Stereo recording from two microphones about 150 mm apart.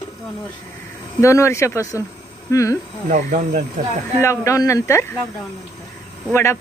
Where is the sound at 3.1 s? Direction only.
55° right (ahead or behind).